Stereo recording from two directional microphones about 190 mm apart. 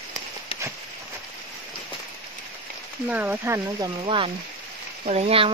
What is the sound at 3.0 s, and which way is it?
Speech, 10° right (ahead or behind).